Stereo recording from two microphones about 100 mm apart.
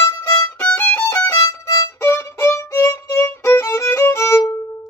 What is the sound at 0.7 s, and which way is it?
Violin, 20° left (ahead or behind).